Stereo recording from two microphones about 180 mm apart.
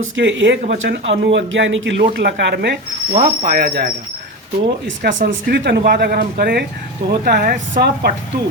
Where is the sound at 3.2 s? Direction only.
55° right (ahead or behind).